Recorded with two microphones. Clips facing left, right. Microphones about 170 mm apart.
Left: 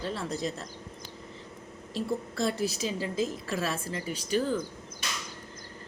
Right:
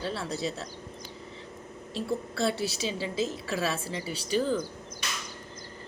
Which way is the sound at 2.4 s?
75° right (ahead or behind).